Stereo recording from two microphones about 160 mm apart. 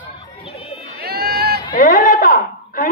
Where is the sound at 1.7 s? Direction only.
60° left (ahead or behind).